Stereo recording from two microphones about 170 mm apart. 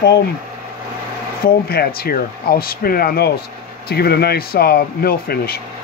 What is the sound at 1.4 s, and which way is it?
Speech, 65° left (ahead or behind).